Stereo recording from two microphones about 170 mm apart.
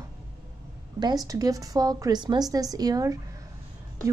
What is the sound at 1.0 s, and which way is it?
A woman's voice, 20° right (ahead or behind).